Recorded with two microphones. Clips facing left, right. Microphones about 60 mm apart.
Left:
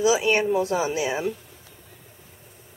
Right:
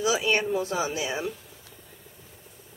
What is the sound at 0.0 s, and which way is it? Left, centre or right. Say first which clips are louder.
A woman's voice: left 4 dB; centre.